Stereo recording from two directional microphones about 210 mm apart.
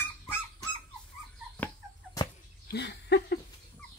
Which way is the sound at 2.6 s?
50° left (ahead or behind).